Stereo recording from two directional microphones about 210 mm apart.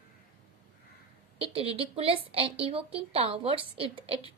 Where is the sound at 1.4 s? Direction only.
25° right (ahead or behind).